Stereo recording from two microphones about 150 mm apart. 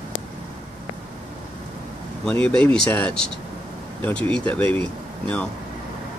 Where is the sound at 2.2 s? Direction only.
5° left (ahead or behind).